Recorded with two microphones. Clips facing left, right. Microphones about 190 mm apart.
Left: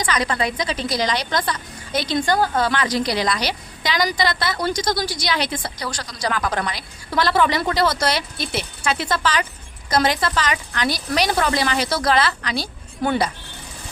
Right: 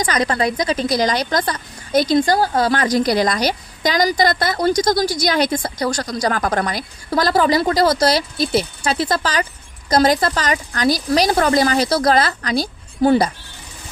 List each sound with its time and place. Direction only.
0.0 s speech: 40° right (ahead or behind)